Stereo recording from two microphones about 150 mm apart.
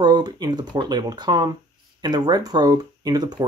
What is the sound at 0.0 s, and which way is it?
Speech, 25° right (ahead or behind).